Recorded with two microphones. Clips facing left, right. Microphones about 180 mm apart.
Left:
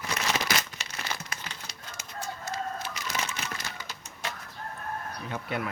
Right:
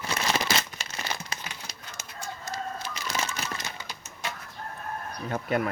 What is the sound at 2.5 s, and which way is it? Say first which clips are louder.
Bird: even; 30° right (ahead or behind).